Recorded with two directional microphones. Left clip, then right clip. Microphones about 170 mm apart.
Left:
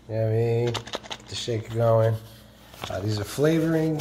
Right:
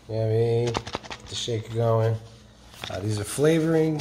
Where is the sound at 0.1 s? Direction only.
5° left (ahead or behind).